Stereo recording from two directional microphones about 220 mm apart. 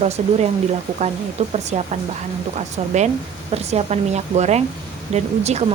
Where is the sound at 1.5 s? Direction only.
30° right (ahead or behind).